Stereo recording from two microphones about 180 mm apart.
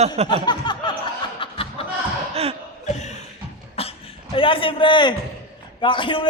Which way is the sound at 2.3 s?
35° right (ahead or behind).